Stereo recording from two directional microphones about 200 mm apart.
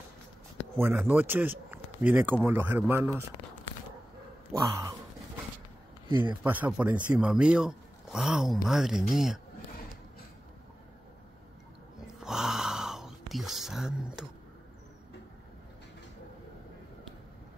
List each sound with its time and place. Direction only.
0.7 s speech: 10° right (ahead or behind)
4.5 s speech: 15° right (ahead or behind)
6.4 s speech: 10° right (ahead or behind)
12.1 s a sound: 5° right (ahead or behind)